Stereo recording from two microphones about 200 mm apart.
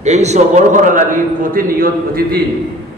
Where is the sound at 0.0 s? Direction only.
35° right (ahead or behind).